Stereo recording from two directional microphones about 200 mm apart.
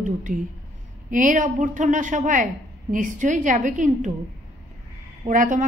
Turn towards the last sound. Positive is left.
turn(degrees=-40)  # may be behind; listen again after turning